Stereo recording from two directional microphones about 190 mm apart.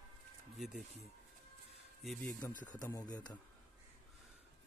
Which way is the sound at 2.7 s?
20° left (ahead or behind).